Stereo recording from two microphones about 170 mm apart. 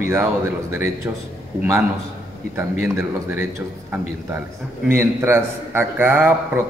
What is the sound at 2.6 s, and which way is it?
A man's voice, 15° right (ahead or behind).